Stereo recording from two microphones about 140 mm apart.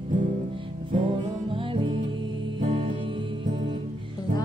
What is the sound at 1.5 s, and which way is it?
Music, 35° right (ahead or behind).